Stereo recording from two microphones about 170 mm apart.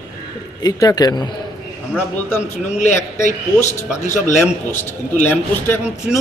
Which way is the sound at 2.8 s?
45° left (ahead or behind).